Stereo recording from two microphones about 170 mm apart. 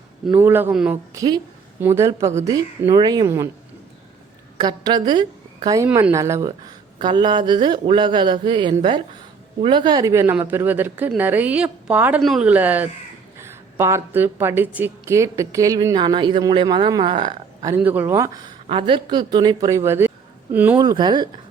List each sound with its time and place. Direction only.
0.3 s a woman's voice: 10° right (ahead or behind)
1.1 s a woman's voice: 20° right (ahead or behind)
4.6 s a woman's voice: 25° right (ahead or behind)
7.0 s a woman's voice: 25° right (ahead or behind)
17.7 s a woman's voice: 10° right (ahead or behind)
18.7 s a woman's voice: 30° right (ahead or behind); by 20.7 s 10° right (ahead or behind)
20.7 s a woman's voice: 25° right (ahead or behind)